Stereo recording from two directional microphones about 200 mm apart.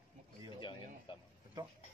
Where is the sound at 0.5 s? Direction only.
25° left (ahead or behind).